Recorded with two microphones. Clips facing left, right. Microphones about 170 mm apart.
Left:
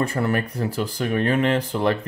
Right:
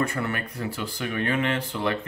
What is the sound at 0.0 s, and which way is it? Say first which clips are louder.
Speech: left 5 dB; 35° left (ahead or behind).